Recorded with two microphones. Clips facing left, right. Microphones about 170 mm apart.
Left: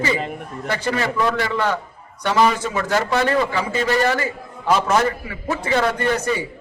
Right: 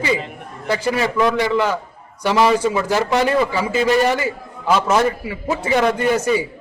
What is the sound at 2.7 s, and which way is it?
A man's voice, 15° right (ahead or behind).